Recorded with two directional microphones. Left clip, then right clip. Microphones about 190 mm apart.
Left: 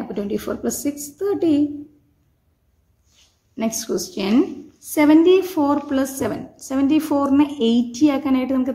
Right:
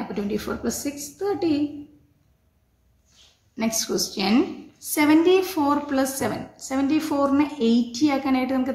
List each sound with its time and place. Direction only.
0.1 s a woman's voice: 30° left (ahead or behind)
3.5 s a woman's voice: 30° left (ahead or behind)